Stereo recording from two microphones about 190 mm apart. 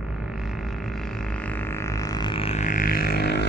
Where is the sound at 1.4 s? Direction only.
10° left (ahead or behind); by 3.5 s 60° left (ahead or behind).